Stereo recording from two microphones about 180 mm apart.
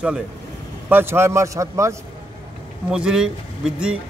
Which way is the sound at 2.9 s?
5° right (ahead or behind).